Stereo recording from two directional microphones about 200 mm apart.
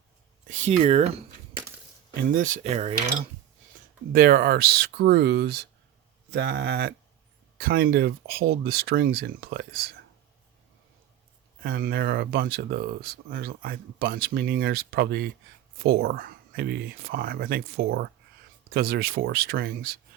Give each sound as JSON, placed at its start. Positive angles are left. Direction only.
{"t": 0.4, "sound": "speech", "side_deg": -40}
{"t": 2.3, "sound": "speech", "side_deg": -40}
{"t": 4.1, "sound": "speech", "side_deg": -50}
{"t": 11.6, "sound": "speech", "side_deg": -45}